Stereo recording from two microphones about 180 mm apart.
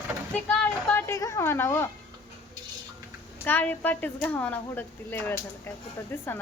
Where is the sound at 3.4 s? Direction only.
10° left (ahead or behind).